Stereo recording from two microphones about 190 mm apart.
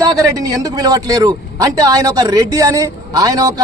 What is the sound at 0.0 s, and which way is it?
A man's voice, 20° right (ahead or behind).